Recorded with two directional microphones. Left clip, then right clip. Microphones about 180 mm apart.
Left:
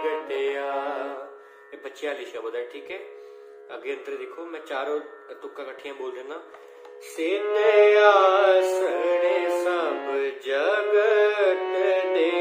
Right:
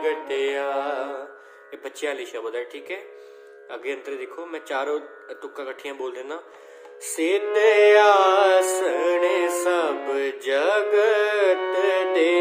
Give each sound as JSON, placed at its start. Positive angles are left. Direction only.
{"t": 0.0, "sound": "mantra", "side_deg": -50}
{"t": 1.8, "sound": "music", "side_deg": -50}